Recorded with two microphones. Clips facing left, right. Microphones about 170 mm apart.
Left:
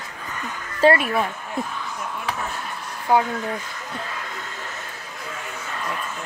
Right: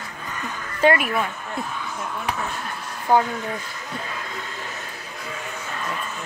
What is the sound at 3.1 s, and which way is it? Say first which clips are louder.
Speech: even; 10° left (ahead or behind).